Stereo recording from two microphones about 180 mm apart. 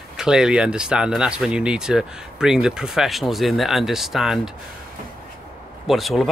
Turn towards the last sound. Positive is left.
turn(degrees=0)  # may be behind; listen again after turning